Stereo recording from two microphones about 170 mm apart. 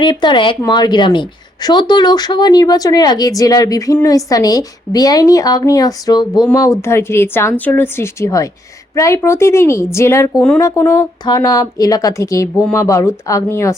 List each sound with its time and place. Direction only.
0.0 s a woman's voice: 25° left (ahead or behind)